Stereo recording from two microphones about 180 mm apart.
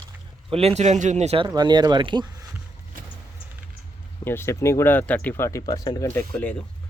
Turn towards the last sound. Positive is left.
turn(degrees=10)  # may be behind; listen again after turning